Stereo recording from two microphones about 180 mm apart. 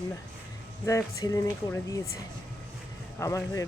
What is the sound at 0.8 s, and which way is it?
Speech, 15° left (ahead or behind).